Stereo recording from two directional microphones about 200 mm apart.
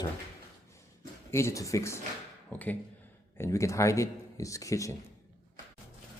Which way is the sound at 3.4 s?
15° left (ahead or behind).